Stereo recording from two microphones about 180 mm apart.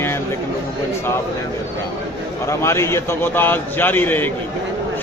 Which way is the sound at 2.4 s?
15° left (ahead or behind).